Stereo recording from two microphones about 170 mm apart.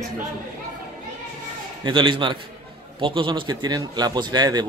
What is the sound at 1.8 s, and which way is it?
A man's voice, 30° right (ahead or behind).